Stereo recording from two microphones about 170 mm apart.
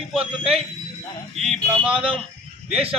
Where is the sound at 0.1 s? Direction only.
Centre (ahead or behind).